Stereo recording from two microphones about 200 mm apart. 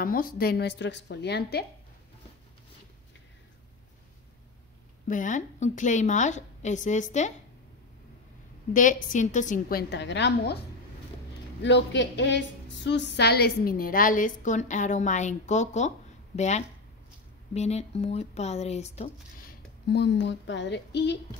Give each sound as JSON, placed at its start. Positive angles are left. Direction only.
{"t": 0.0, "sound": "a woman's voice", "side_deg": 45}
{"t": 5.0, "sound": "a woman's voice", "side_deg": 40}
{"t": 8.7, "sound": "a woman's voice", "side_deg": 40}
{"t": 11.6, "sound": "a woman's voice", "side_deg": 60}
{"t": 19.4, "sound": "speech", "side_deg": 55}